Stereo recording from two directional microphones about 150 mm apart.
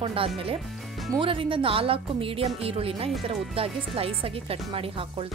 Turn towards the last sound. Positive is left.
turn(degrees=-35)  # may be behind; listen again after turning